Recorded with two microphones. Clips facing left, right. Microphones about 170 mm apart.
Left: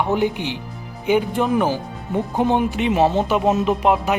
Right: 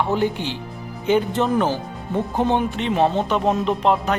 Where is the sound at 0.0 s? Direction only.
15° left (ahead or behind).